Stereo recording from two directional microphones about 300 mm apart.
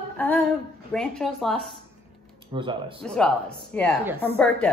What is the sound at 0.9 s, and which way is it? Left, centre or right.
Speech, centre.